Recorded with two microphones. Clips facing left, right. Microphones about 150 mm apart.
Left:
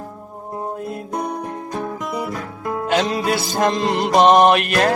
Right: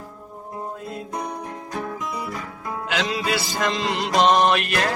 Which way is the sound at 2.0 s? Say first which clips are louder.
Left 5 dB; 60° left (ahead or behind).